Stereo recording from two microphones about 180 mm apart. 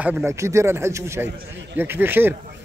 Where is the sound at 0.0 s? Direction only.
10° right (ahead or behind).